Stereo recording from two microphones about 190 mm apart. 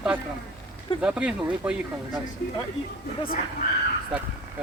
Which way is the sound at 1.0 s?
5° right (ahead or behind).